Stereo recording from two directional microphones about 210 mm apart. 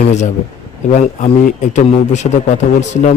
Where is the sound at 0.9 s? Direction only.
35° left (ahead or behind).